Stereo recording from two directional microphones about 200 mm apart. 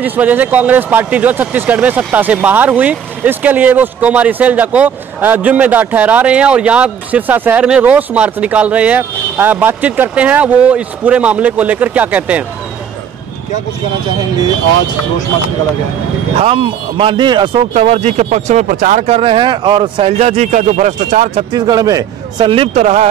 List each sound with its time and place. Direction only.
0.0 s speech: 10° right (ahead or behind)
16.3 s a man's voice: 25° right (ahead or behind)
21.5 s a man's voice: 20° right (ahead or behind); by 23.0 s 35° right (ahead or behind)